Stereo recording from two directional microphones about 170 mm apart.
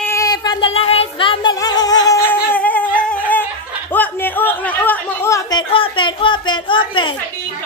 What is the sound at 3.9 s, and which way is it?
Chatter, 10° left (ahead or behind).